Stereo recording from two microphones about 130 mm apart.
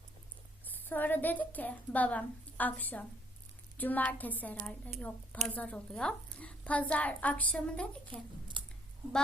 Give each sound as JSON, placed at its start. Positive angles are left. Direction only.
{"t": 0.6, "sound": "a woman's voice", "side_deg": 15}
{"t": 8.6, "sound": "scissors", "side_deg": -40}